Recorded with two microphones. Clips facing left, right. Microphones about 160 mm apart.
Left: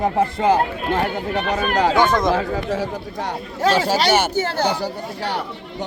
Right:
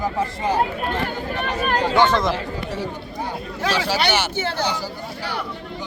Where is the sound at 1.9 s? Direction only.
15° left (ahead or behind).